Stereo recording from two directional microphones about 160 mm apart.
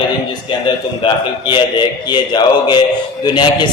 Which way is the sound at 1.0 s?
30° left (ahead or behind).